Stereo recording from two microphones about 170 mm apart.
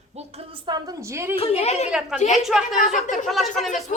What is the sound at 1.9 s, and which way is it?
Speech, 5° right (ahead or behind).